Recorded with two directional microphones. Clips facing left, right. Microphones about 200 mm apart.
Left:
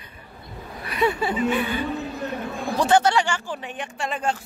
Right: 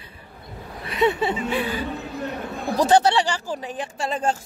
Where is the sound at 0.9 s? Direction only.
25° right (ahead or behind).